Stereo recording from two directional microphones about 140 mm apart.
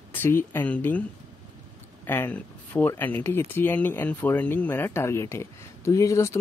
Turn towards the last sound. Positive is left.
turn(degrees=20)  # may be behind; listen again after turning